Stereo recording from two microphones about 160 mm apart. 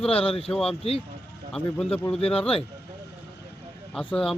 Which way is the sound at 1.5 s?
5° left (ahead or behind).